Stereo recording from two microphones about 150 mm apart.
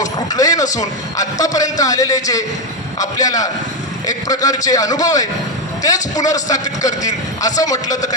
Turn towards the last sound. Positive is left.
turn(degrees=25)  # may be behind; listen again after turning